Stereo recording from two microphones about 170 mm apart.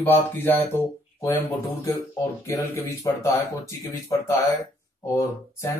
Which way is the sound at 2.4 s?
20° left (ahead or behind).